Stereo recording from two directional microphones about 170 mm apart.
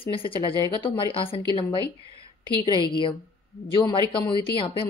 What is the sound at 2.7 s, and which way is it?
A woman's voice, 30° left (ahead or behind).